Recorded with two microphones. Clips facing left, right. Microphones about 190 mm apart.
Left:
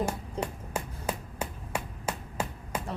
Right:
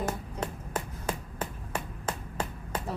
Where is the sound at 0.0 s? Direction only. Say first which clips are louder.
Left 2 dB; 10° left (ahead or behind).